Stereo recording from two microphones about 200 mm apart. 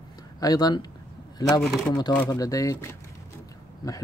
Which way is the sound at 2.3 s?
15° left (ahead or behind).